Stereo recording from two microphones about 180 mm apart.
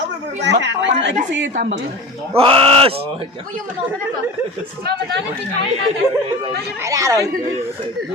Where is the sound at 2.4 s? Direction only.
30° right (ahead or behind).